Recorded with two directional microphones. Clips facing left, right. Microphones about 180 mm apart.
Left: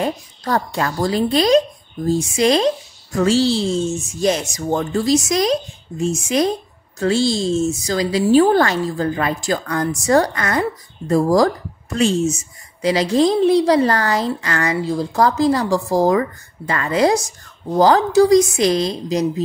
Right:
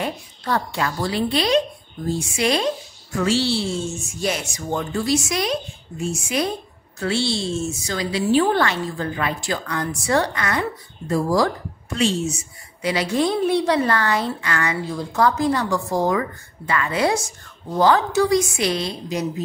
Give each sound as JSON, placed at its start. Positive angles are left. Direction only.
{"t": 0.0, "sound": "a woman's voice", "side_deg": 40}